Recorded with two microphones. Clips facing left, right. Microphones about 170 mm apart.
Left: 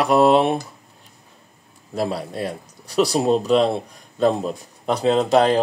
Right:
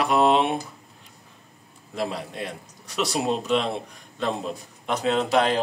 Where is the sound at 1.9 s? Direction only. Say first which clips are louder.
Left 5 dB; 35° left (ahead or behind).